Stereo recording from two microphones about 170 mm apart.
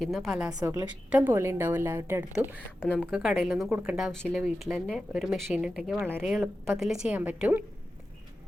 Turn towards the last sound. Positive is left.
turn(degrees=-10)  # may be behind; listen again after turning